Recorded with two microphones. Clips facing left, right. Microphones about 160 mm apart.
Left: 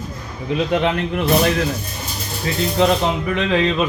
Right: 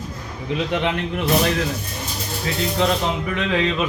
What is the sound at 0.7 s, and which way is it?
Speech, 40° left (ahead or behind).